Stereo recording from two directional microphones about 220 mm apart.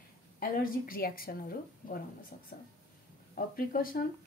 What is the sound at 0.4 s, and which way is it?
Speech, 40° left (ahead or behind).